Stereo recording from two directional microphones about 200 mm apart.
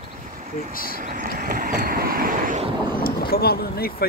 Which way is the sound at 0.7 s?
45° left (ahead or behind).